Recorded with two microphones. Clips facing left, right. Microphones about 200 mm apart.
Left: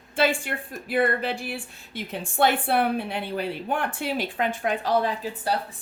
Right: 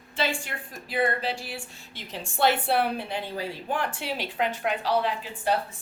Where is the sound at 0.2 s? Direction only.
55° left (ahead or behind).